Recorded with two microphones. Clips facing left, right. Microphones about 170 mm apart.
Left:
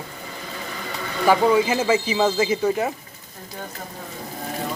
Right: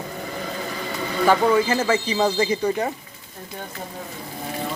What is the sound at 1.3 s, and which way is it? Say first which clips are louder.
Speech: left 1 dB; 10° left (ahead or behind).